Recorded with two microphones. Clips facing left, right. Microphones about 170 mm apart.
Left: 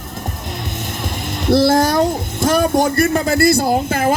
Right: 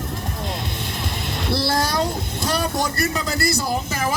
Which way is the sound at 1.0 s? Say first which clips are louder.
Left 8 dB; 50° left (ahead or behind).